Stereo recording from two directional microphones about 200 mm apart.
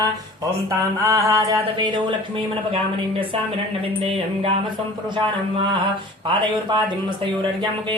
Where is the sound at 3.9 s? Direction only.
25° right (ahead or behind).